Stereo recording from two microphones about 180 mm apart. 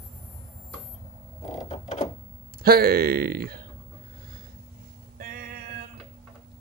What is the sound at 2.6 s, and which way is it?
Speech, 60° right (ahead or behind).